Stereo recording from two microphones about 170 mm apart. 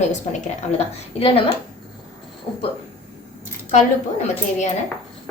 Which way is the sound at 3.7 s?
45° left (ahead or behind).